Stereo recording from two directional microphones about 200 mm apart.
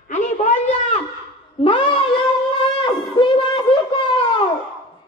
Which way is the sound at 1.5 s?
25° left (ahead or behind).